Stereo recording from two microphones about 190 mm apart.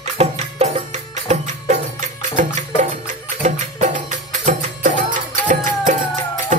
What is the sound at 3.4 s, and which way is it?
Music, 40° right (ahead or behind).